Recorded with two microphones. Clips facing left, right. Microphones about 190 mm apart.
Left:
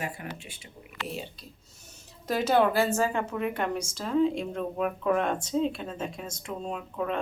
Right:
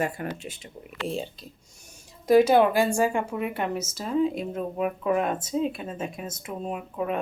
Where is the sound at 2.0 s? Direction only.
10° right (ahead or behind).